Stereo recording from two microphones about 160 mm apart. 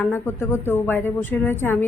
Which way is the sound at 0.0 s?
15° left (ahead or behind).